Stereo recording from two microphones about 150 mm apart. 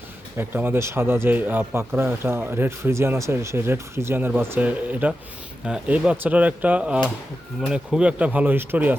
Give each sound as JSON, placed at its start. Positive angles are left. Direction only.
{"t": 0.3, "sound": "speech", "side_deg": -15}